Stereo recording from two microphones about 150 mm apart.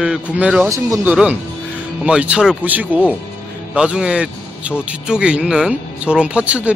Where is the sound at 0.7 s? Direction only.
20° right (ahead or behind).